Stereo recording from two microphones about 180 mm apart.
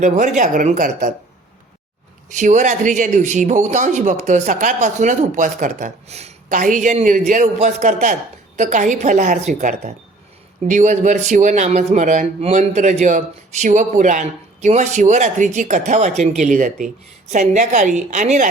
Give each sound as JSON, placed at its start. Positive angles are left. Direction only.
{"t": 0.0, "sound": "speech", "side_deg": -45}
{"t": 2.3, "sound": "speech", "side_deg": -45}